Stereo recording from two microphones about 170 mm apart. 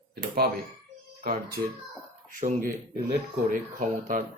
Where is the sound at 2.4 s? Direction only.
50° right (ahead or behind).